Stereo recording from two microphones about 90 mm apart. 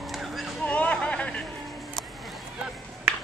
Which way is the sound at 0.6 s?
15° left (ahead or behind).